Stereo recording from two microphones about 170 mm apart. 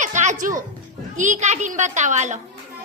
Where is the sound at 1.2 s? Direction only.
45° right (ahead or behind).